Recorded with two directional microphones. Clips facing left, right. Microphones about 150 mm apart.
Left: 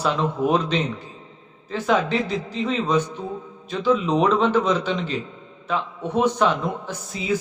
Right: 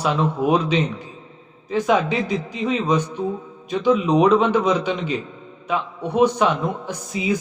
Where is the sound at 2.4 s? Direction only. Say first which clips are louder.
Right 2 dB; 10° right (ahead or behind).